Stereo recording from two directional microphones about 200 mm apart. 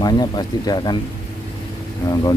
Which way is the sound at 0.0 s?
20° left (ahead or behind).